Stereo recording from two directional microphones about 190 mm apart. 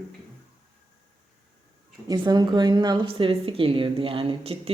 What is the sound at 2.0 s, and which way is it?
A woman's voice, 20° right (ahead or behind).